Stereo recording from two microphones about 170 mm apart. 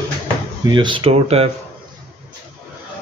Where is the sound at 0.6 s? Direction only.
30° right (ahead or behind).